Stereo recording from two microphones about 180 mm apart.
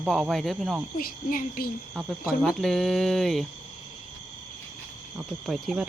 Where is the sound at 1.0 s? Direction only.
50° left (ahead or behind).